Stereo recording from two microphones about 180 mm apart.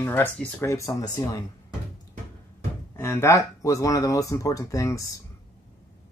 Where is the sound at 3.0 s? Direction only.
15° left (ahead or behind).